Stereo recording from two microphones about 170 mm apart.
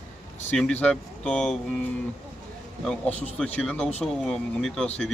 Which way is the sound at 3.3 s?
5° left (ahead or behind).